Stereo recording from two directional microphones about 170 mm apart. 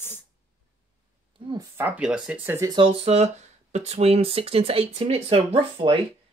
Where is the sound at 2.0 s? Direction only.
5° right (ahead or behind).